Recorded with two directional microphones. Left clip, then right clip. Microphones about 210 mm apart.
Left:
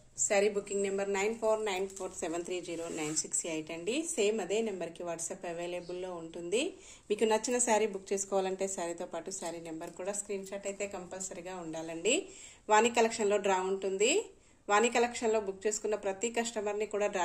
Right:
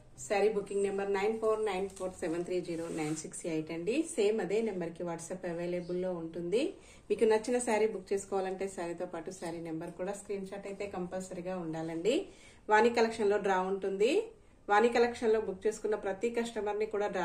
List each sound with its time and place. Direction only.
0.3 s a woman's voice: 35° left (ahead or behind)
3.4 s a woman's voice: 30° left (ahead or behind)
11.4 s a woman's voice: 30° left (ahead or behind)